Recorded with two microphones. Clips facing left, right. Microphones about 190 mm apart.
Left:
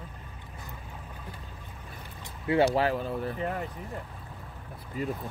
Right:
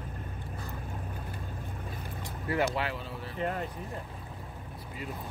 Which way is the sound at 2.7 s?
40° left (ahead or behind).